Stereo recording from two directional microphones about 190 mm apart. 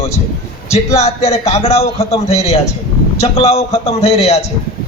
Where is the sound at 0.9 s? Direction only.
35° left (ahead or behind).